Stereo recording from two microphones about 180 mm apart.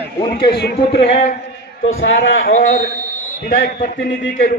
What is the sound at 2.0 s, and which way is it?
Speech, 90° left.